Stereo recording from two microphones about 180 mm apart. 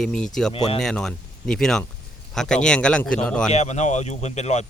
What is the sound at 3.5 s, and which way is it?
Speech, 40° left (ahead or behind).